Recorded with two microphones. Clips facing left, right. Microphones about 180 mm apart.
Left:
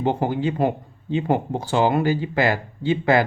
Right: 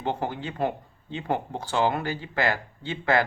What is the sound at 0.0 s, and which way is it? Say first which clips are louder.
Speech: left 8 dB; 10° left (ahead or behind).